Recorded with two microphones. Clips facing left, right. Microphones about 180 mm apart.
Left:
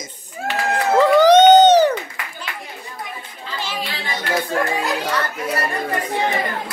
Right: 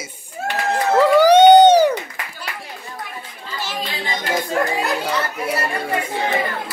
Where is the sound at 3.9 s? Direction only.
15° right (ahead or behind).